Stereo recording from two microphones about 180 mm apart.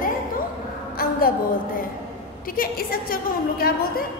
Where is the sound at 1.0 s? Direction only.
55° left (ahead or behind).